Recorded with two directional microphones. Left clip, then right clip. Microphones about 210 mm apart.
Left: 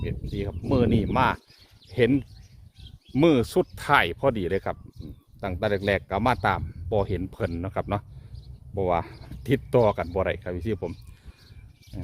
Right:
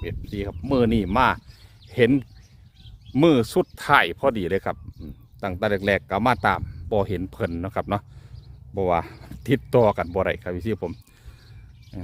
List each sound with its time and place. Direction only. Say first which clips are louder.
0.0 s speech: right 2 dB; 35° right (ahead or behind)
11.9 s speech: right 3 dB; 30° right (ahead or behind)